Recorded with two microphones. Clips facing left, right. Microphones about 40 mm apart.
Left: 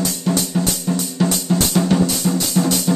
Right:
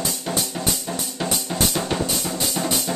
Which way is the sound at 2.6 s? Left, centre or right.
Centre.